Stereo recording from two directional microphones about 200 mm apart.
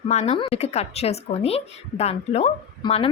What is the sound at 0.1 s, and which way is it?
A woman's voice, 35° left (ahead or behind).